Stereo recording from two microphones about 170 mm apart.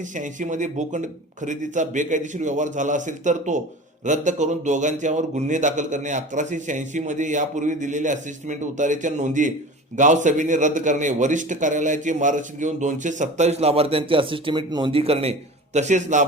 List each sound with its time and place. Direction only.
0.2 s a man's voice: 45° right (ahead or behind)